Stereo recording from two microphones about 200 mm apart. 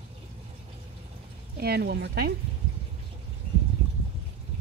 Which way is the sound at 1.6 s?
50° right (ahead or behind).